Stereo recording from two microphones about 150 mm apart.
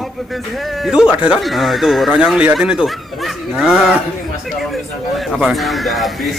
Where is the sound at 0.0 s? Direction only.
Centre (ahead or behind).